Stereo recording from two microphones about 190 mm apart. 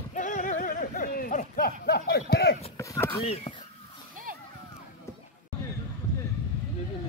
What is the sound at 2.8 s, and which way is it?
Speech, 15° left (ahead or behind).